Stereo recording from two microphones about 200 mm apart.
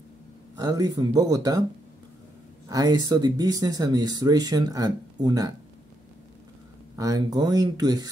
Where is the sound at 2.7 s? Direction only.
20° right (ahead or behind).